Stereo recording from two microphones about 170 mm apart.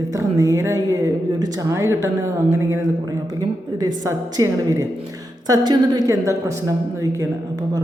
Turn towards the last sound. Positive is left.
turn(degrees=-15)  # may be behind; listen again after turning